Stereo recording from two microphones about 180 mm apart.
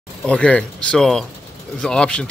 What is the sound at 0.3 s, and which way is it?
Speech, 5° left (ahead or behind).